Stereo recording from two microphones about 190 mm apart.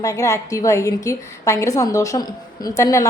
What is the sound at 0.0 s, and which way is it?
A woman's voice, 15° left (ahead or behind).